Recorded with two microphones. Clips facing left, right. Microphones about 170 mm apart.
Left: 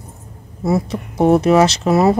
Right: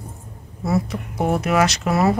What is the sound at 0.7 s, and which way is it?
Speech, 30° left (ahead or behind).